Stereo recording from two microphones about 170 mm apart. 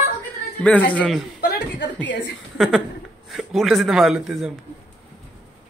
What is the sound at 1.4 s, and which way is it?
Chuckle, 75° left (ahead or behind).